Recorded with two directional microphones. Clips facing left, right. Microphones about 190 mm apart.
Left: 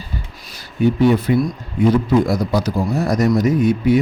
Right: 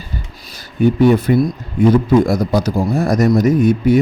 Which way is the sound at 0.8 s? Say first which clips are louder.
Right 3 dB; 50° right (ahead or behind).